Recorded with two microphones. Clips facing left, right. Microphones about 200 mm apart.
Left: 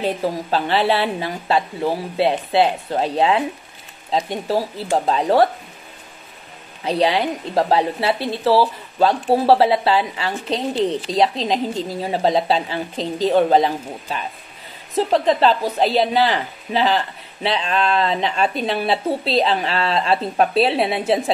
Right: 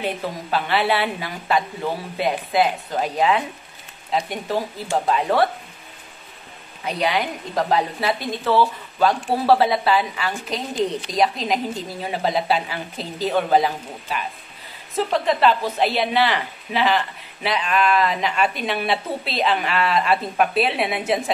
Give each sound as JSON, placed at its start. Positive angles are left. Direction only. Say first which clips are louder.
{"t": 0.0, "sound": "a woman's voice", "louder": "left 5 dB", "side_deg": 35}
{"t": 5.0, "sound": "a woman's voice", "louder": "left 3 dB", "side_deg": 35}
{"t": 6.8, "sound": "a woman's voice", "louder": "left 4 dB", "side_deg": 30}